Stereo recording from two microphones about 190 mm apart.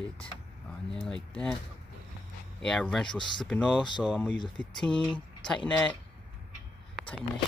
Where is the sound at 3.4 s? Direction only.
5° left (ahead or behind).